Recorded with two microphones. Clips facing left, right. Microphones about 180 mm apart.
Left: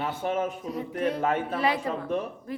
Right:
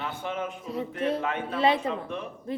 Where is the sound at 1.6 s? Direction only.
25° right (ahead or behind).